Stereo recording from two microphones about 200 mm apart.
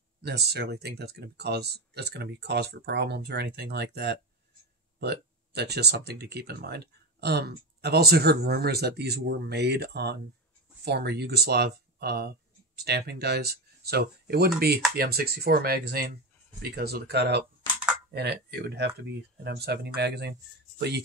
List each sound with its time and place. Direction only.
0.2 s speech: 55° right (ahead or behind)